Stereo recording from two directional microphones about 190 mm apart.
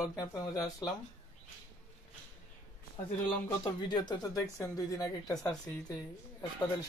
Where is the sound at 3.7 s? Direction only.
20° left (ahead or behind).